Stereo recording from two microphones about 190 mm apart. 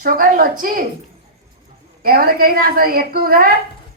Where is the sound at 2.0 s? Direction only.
50° right (ahead or behind).